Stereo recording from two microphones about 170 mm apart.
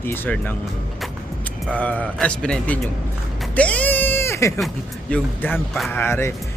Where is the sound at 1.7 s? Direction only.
10° left (ahead or behind).